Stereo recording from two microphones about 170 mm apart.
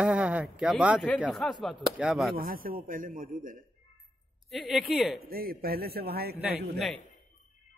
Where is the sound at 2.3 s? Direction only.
55° right (ahead or behind).